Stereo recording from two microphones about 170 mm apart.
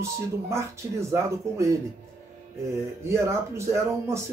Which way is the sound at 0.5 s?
15° right (ahead or behind).